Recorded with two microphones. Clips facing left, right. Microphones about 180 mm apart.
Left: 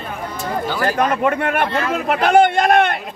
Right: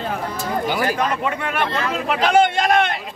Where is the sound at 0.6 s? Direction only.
15° right (ahead or behind).